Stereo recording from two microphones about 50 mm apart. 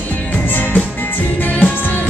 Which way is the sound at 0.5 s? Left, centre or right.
Left.